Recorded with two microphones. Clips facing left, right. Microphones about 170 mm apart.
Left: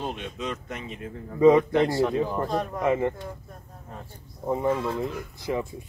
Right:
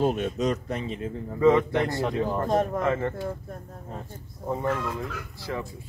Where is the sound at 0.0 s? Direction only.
45° right (ahead or behind).